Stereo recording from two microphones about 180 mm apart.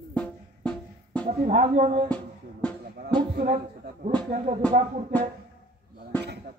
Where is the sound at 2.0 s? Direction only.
5° left (ahead or behind).